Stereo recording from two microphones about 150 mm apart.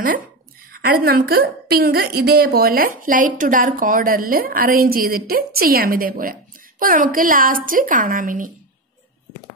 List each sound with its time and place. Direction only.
0.7 s a woman's voice: 85° right; by 8.5 s 65° right (ahead or behind)